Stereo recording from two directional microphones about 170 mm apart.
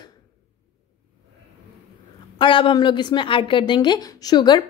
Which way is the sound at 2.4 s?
30° left (ahead or behind).